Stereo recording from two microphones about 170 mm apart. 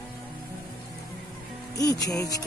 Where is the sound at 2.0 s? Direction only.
20° left (ahead or behind).